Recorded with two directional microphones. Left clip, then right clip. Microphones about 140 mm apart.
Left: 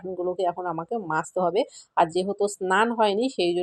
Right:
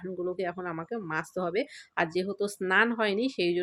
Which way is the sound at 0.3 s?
15° left (ahead or behind).